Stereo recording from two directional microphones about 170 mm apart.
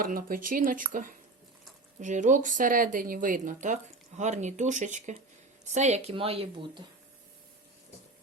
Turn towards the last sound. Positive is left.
turn(degrees=-30)  # may be behind; listen again after turning